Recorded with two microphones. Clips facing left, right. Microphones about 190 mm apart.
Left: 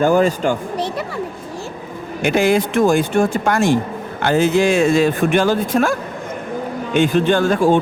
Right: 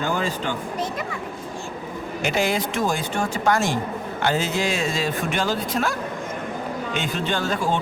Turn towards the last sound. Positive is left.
turn(degrees=50)  # may be behind; listen again after turning